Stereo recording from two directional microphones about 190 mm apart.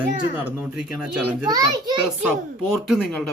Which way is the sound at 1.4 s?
20° right (ahead or behind).